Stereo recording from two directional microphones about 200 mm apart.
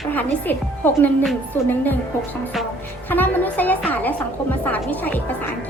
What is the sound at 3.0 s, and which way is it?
Speech, 10° left (ahead or behind).